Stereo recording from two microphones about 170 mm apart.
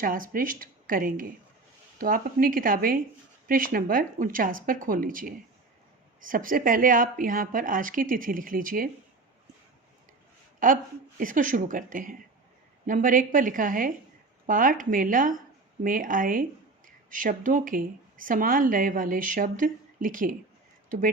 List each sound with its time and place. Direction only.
0.0 s speech: 55° right (ahead or behind)
10.6 s speech: 55° right (ahead or behind)